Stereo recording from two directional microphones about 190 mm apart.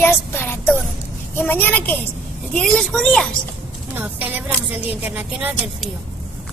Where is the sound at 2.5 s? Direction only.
5° left (ahead or behind).